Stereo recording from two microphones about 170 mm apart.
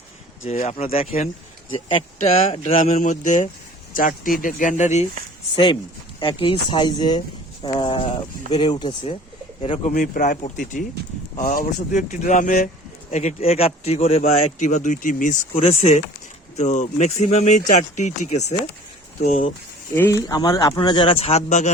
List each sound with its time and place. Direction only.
0.4 s speech: 40° left (ahead or behind)
2.7 s speech: 50° left (ahead or behind)
6.1 s speech: 30° left (ahead or behind)
9.6 s speech: 40° left (ahead or behind)
19.9 s speech: 15° left (ahead or behind); by 21.7 s 40° left (ahead or behind)